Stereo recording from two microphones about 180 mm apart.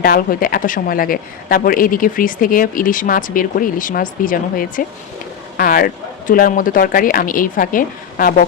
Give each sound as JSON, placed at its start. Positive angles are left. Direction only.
{"t": 0.0, "sound": "speech", "side_deg": 50}